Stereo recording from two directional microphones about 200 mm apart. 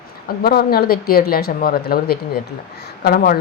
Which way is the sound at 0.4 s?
50° left (ahead or behind).